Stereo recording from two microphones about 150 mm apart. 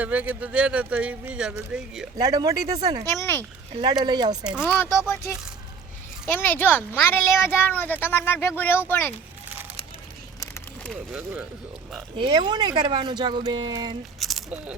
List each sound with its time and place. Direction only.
0.0 s speech: 10° right (ahead or behind)
2.1 s speech: 25° right (ahead or behind)
3.1 s speech: 15° left (ahead or behind)
3.7 s speech: 30° right (ahead or behind)
4.4 s speech: 5° right (ahead or behind)
4.8 s speech: 20° left (ahead or behind)
6.3 s speech: 15° left (ahead or behind)
11.1 s speech: 10° right (ahead or behind)
12.1 s speech: 35° right (ahead or behind)
14.2 s a sound: centre (ahead or behind)